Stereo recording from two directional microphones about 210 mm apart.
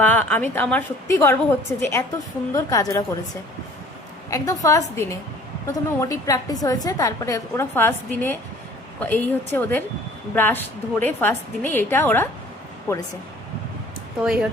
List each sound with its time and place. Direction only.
0.0 s a woman's voice: 5° left (ahead or behind)
4.3 s a woman's voice: 15° left (ahead or behind)
14.2 s speech: 5° right (ahead or behind)